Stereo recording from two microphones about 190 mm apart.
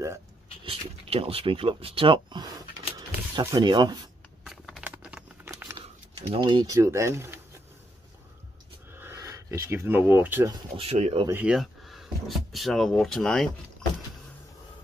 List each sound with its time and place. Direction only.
0.7 s speech: 30° right (ahead or behind)
4.5 s crumpling: centre (ahead or behind)
5.8 s speech: 25° right (ahead or behind)
8.9 s speech: 15° right (ahead or behind)
10.8 s speech: 35° right (ahead or behind)
11.2 s speech: 10° right (ahead or behind)